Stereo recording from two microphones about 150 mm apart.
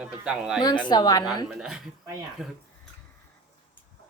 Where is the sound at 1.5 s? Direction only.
5° right (ahead or behind).